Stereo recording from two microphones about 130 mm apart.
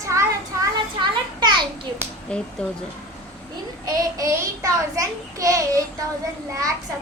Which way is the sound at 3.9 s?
25° right (ahead or behind).